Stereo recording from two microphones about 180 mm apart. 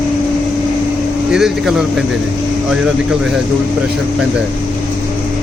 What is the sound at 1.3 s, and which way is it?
Speech, centre (ahead or behind).